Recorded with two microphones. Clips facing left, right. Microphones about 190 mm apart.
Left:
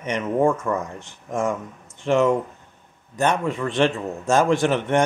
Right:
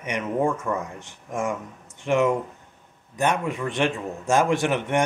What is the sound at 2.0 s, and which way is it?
Speech, 15° right (ahead or behind).